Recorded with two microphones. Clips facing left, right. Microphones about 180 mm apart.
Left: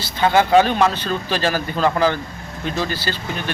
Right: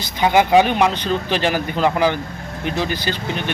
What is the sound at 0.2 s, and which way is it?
Speech, 15° right (ahead or behind).